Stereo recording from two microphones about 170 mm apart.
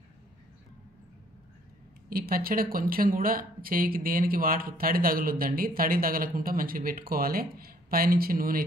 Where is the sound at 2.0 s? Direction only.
60° right (ahead or behind).